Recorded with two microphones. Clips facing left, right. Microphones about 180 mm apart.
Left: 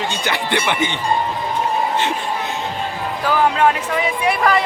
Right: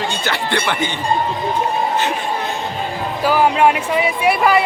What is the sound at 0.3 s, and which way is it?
Speech, 20° left (ahead or behind).